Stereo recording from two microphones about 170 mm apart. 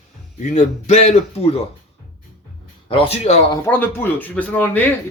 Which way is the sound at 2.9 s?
35° left (ahead or behind).